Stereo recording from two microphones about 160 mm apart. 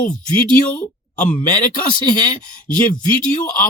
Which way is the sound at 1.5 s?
55° left (ahead or behind).